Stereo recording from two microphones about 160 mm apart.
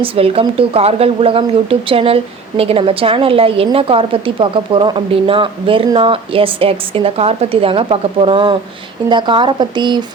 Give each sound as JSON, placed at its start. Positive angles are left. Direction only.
{"t": 0.0, "sound": "a woman's voice", "side_deg": -35}